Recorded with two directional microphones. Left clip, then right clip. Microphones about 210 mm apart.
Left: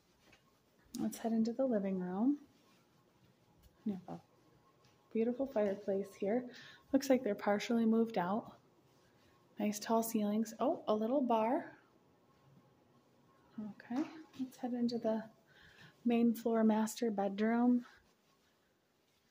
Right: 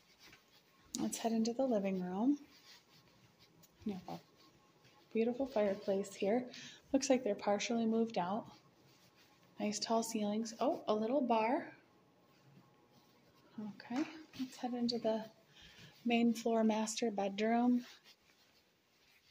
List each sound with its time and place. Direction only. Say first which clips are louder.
0.9 s speech: right 1 dB; 15° left (ahead or behind)
3.9 s speech: left 1 dB; 20° left (ahead or behind)
5.1 s speech: even; 20° left (ahead or behind)
9.6 s speech: left 1 dB; 25° left (ahead or behind)
13.9 s speech: even; 20° left (ahead or behind)